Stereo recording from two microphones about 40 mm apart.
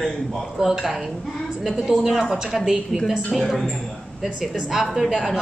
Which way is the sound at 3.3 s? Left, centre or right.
Centre.